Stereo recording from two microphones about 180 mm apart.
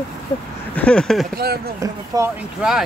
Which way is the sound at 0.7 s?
5° left (ahead or behind).